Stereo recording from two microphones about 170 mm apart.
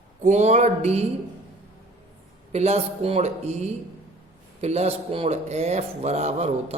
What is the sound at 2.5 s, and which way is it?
Speech, 40° right (ahead or behind).